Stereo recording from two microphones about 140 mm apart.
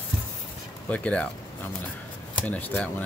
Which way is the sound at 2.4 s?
10° left (ahead or behind).